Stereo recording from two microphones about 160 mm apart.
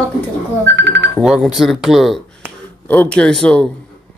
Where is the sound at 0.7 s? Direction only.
90° right.